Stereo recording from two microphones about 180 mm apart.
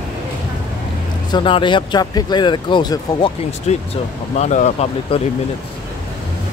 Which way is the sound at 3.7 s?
40° left (ahead or behind).